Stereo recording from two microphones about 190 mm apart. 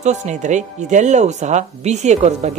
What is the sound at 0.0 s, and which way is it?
Speech, 40° right (ahead or behind).